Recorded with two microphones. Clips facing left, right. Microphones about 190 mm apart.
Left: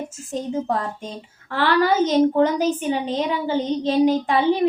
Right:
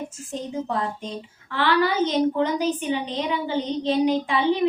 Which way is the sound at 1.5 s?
40° left (ahead or behind).